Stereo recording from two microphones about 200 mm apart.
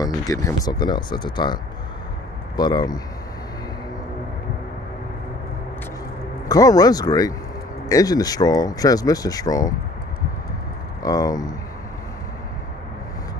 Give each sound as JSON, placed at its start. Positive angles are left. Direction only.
{"t": 0.0, "sound": "speech", "side_deg": 15}
{"t": 6.5, "sound": "speech", "side_deg": 20}
{"t": 11.0, "sound": "speech", "side_deg": 20}